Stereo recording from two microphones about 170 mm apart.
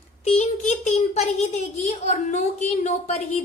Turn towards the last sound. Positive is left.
turn(degrees=40)  # may be behind; listen again after turning